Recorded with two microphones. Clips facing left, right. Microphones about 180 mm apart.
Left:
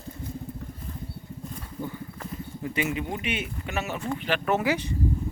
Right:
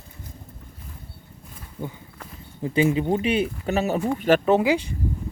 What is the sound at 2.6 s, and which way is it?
Speech, 30° right (ahead or behind).